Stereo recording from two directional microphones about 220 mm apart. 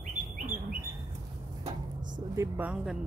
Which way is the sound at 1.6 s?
35° right (ahead or behind).